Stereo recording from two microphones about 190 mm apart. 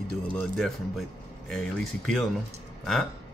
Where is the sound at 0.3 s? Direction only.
Centre (ahead or behind).